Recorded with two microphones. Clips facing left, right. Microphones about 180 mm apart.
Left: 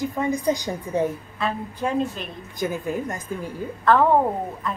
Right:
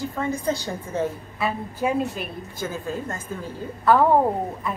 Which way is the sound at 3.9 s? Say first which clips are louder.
Even; 10° right (ahead or behind).